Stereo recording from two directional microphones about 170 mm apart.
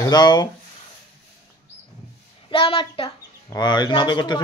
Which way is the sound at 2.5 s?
30° left (ahead or behind).